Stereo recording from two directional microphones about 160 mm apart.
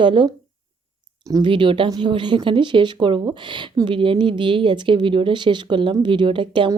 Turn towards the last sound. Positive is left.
turn(degrees=-30)  # may be behind; listen again after turning